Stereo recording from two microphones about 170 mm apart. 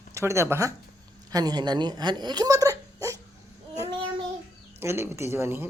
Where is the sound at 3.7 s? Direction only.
20° right (ahead or behind).